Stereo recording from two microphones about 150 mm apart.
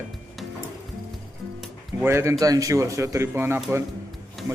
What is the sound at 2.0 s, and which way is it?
A man's voice, 15° right (ahead or behind).